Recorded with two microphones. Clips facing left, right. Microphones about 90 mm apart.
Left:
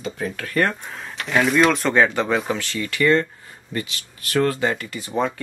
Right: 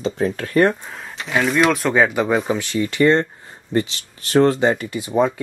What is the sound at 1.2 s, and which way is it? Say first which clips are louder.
Speech: even; centre (ahead or behind).